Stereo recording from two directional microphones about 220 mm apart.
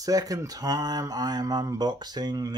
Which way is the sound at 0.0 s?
15° right (ahead or behind).